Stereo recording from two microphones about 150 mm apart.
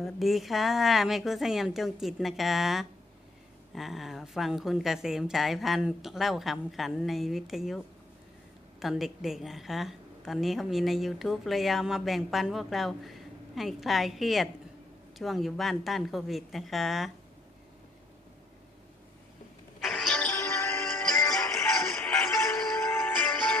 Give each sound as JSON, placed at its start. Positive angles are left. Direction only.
{"t": 0.0, "sound": "a woman's voice", "side_deg": 0}
{"t": 19.8, "sound": "music", "side_deg": 0}
{"t": 20.3, "sound": "music", "side_deg": 15}
{"t": 21.5, "sound": "music", "side_deg": 15}